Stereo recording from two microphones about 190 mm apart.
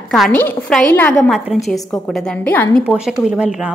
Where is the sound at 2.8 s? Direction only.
5° right (ahead or behind).